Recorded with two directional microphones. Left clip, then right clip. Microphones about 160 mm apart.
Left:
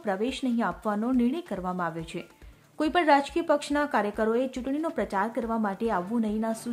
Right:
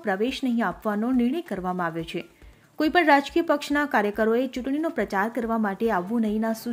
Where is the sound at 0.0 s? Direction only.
15° right (ahead or behind).